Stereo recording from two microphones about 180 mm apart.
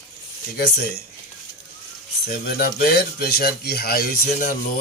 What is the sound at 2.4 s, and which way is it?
A man's voice, 60° left (ahead or behind).